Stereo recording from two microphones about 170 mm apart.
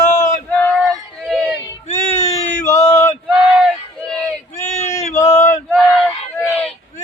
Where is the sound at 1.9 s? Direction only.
40° left (ahead or behind).